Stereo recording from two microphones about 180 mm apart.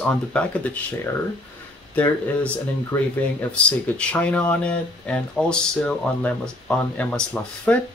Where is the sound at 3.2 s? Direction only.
5° left (ahead or behind).